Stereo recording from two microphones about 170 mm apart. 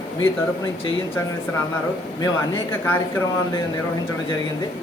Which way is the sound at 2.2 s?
15° left (ahead or behind).